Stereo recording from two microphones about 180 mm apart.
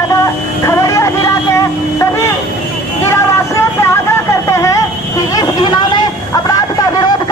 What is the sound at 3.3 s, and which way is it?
Vehicle, 15° left (ahead or behind).